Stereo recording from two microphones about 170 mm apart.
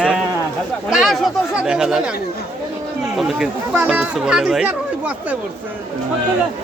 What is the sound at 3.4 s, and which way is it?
Speech, 10° right (ahead or behind).